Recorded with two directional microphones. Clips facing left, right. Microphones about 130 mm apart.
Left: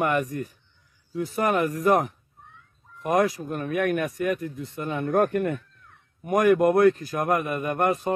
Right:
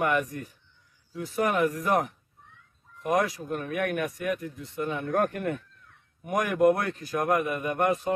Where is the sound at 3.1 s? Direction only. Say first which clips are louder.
Left 3 dB; 45° left (ahead or behind).